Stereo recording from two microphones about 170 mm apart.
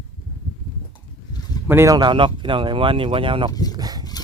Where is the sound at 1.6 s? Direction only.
15° right (ahead or behind); by 3.5 s 30° right (ahead or behind).